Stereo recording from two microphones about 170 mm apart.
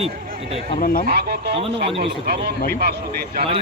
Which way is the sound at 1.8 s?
35° right (ahead or behind).